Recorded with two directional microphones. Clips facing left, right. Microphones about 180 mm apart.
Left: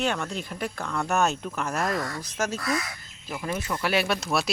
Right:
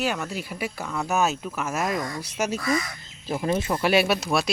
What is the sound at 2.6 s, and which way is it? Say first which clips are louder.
Speech: right 3 dB; centre (ahead or behind).